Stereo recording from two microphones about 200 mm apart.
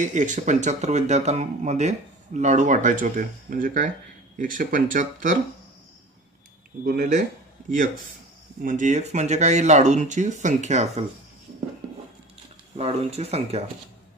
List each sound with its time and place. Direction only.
0.0 s speech: 35° right (ahead or behind)
6.9 s speech: 45° right (ahead or behind)
8.6 s speech: 35° right (ahead or behind)
12.7 s speech: 30° right (ahead or behind)